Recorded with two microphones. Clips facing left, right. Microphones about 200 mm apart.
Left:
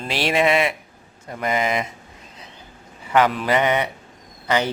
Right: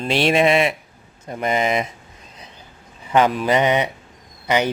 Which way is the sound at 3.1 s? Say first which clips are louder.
Right 2 dB; 20° right (ahead or behind).